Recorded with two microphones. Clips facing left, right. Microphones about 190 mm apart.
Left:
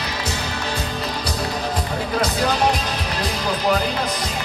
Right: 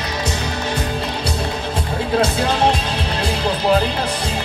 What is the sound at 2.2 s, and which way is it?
Music, 25° right (ahead or behind).